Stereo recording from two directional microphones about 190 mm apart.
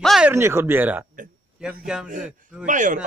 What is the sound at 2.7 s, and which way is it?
Speech, 40° right (ahead or behind).